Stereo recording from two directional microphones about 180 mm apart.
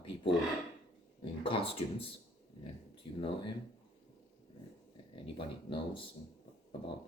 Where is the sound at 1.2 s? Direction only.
30° left (ahead or behind).